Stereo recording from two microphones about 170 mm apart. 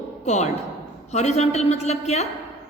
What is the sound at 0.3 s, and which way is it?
A woman's voice, 40° left (ahead or behind).